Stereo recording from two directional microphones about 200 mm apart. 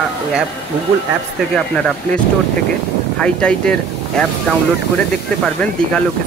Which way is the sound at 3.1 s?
5° left (ahead or behind).